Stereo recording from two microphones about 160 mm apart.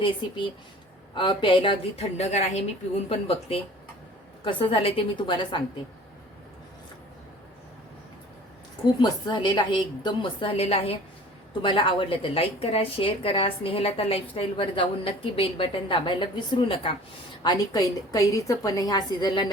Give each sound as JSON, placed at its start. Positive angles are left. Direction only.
{"t": 0.0, "sound": "a woman's voice", "side_deg": 30}
{"t": 9.0, "sound": "a woman's voice", "side_deg": 30}
{"t": 17.4, "sound": "a woman's voice", "side_deg": 20}